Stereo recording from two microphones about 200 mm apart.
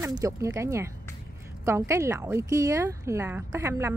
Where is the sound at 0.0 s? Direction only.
15° right (ahead or behind).